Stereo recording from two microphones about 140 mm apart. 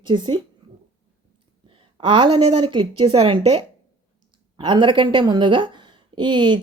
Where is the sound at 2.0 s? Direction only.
35° right (ahead or behind).